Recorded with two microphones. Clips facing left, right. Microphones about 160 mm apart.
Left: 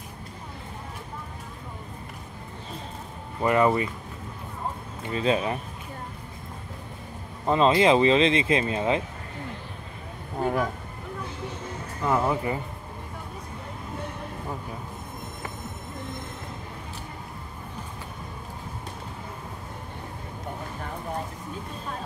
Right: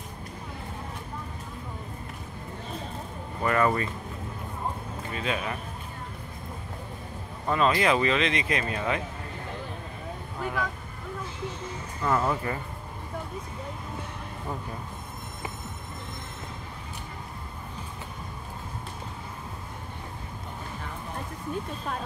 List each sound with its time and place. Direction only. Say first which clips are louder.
3.4 s speech: left 3 dB; 20° left (ahead or behind)
5.1 s speech: left 7 dB; 30° left (ahead or behind)
7.4 s speech: left 4 dB; 25° left (ahead or behind)
10.4 s speech: left 6 dB; 35° left (ahead or behind)
12.0 s speech: left 2 dB; 15° left (ahead or behind)